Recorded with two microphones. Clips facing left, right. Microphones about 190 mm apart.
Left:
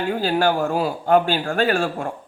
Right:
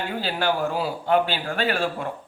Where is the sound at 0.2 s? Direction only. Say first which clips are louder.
Left 4 dB; 45° left (ahead or behind).